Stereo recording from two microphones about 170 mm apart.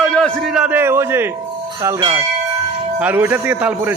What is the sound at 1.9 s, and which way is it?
Speech, 30° right (ahead or behind).